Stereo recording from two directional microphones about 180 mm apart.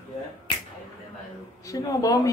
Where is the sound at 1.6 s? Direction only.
20° left (ahead or behind).